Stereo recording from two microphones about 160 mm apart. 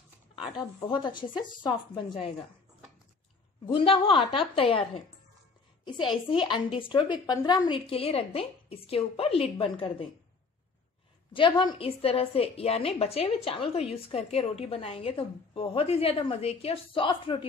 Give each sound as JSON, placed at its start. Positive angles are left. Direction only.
{"t": 0.6, "sound": "speech", "side_deg": 25}
{"t": 3.7, "sound": "a woman's voice", "side_deg": 35}
{"t": 6.4, "sound": "a woman's voice", "side_deg": 30}
{"t": 11.3, "sound": "a woman's voice", "side_deg": 30}